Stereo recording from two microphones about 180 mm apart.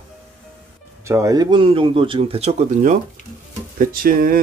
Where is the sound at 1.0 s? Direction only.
15° right (ahead or behind).